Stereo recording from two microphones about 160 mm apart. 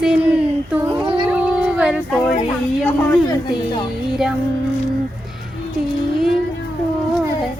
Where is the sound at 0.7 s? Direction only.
10° right (ahead or behind).